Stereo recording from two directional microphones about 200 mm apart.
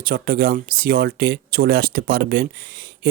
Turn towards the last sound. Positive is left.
turn(degrees=-50)  # may be behind; listen again after turning